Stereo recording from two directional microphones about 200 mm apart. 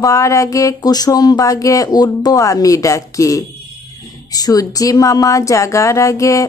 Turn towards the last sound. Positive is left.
turn(degrees=15)  # may be behind; listen again after turning